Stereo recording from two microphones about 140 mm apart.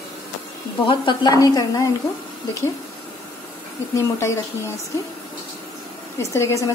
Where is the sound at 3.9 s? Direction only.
20° left (ahead or behind).